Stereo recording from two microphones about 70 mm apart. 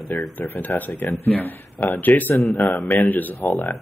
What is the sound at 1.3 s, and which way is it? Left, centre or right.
Speech, left.